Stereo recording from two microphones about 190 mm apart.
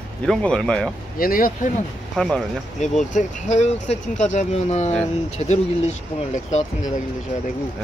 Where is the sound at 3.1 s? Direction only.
35° left (ahead or behind).